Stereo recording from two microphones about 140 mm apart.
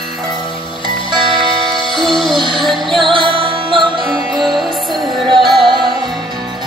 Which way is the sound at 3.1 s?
35° right (ahead or behind).